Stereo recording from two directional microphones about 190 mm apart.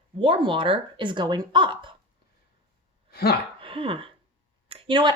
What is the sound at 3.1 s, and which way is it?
Speech, 55° left (ahead or behind).